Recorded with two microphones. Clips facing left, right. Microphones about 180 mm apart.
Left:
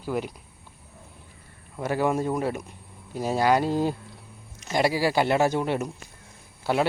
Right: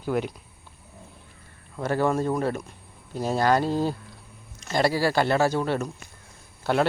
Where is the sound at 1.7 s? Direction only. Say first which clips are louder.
Right 1 dB; 10° left (ahead or behind).